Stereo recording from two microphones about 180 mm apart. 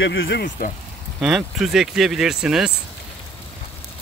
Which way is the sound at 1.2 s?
Centre (ahead or behind).